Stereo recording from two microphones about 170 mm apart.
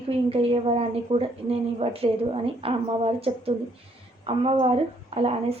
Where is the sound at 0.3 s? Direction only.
35° right (ahead or behind).